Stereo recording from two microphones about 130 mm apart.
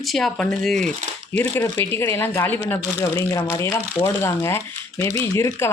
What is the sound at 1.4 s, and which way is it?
Speech, 15° left (ahead or behind).